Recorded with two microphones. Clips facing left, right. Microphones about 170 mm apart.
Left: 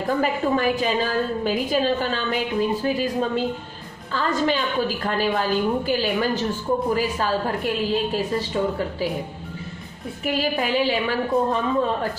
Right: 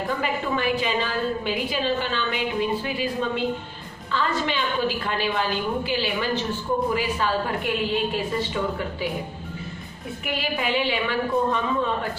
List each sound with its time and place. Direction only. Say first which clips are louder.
0.2 s a woman's voice: left 4 dB; 40° left (ahead or behind)
10.2 s a woman's voice: left 4 dB; 40° left (ahead or behind)